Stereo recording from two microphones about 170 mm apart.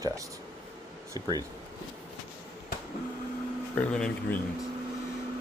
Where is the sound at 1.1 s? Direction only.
25° right (ahead or behind).